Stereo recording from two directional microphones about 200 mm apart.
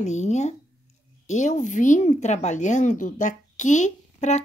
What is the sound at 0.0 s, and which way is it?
A woman's voice, 35° left (ahead or behind).